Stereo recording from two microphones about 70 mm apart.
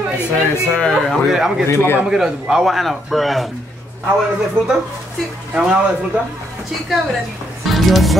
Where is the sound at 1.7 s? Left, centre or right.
Left.